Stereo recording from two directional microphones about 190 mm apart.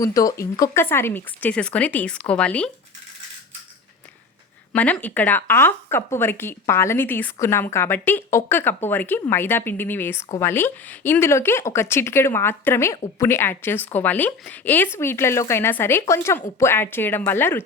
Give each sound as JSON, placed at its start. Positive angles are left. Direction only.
{"t": 0.0, "sound": "speech", "side_deg": 20}
{"t": 4.7, "sound": "speech", "side_deg": 10}